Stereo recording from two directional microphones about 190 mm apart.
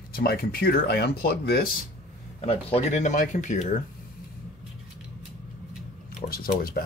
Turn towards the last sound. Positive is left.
turn(degrees=50)  # may be behind; listen again after turning